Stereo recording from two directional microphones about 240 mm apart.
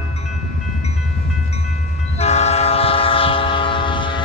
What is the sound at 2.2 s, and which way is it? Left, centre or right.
Train, left.